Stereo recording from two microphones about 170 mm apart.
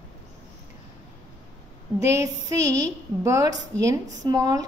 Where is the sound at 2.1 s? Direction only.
20° right (ahead or behind).